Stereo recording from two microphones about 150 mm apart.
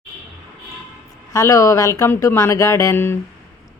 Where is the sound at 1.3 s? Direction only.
20° left (ahead or behind).